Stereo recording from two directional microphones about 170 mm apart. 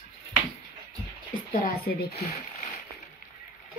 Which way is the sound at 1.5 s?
65° left (ahead or behind).